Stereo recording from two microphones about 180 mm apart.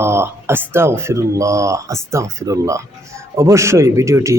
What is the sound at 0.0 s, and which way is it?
Speech, 15° right (ahead or behind).